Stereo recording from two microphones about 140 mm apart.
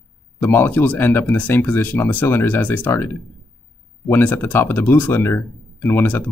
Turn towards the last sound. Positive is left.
turn(degrees=15)  # may be behind; listen again after turning